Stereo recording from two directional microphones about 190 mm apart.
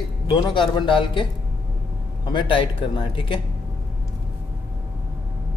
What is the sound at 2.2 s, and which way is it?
Speech, 25° left (ahead or behind).